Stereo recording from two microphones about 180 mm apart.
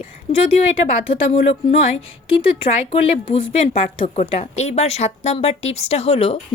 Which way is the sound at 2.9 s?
35° left (ahead or behind).